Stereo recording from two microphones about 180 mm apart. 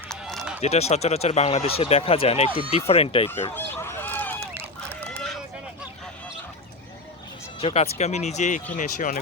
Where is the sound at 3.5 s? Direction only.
10° left (ahead or behind).